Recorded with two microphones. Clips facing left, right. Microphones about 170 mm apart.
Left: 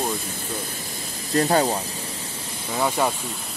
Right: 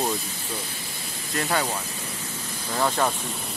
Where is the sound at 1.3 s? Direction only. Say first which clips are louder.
Left 7 dB; 35° left (ahead or behind).